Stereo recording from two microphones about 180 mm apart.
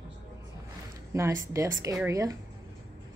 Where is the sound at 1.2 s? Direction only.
15° right (ahead or behind).